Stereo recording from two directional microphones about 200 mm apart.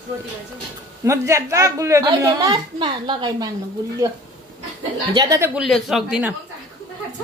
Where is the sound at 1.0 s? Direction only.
15° right (ahead or behind).